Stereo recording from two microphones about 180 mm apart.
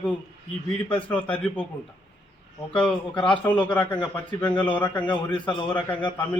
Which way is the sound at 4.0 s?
25° left (ahead or behind).